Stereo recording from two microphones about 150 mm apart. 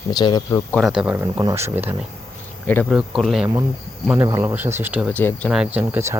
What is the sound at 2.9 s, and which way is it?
Speech, 5° right (ahead or behind).